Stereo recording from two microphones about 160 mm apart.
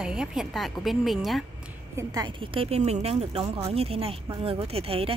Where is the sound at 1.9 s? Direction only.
25° right (ahead or behind).